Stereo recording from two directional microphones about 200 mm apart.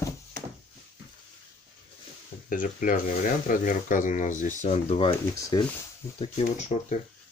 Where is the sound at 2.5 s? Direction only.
40° left (ahead or behind).